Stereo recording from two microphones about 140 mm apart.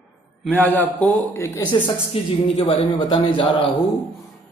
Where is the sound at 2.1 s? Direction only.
40° left (ahead or behind).